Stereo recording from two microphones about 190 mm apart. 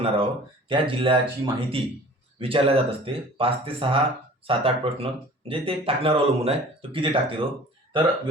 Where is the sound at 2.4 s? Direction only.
30° right (ahead or behind).